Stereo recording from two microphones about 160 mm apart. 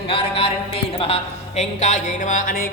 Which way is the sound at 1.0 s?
40° left (ahead or behind).